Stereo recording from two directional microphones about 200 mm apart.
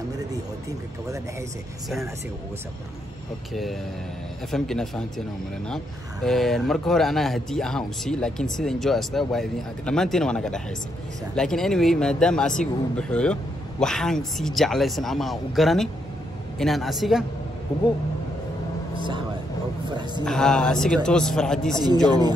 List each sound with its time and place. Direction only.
0.3 s a sound: 15° right (ahead or behind)
4.5 s speech: centre (ahead or behind)
6.2 s speech: centre (ahead or behind)
20.2 s speech: 5° left (ahead or behind)
22.0 s speech: 20° right (ahead or behind)